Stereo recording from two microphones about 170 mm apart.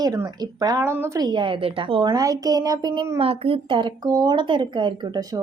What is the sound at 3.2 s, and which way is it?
A woman's voice, 35° right (ahead or behind).